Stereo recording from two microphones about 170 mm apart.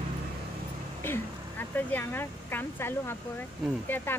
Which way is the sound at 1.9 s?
10° left (ahead or behind).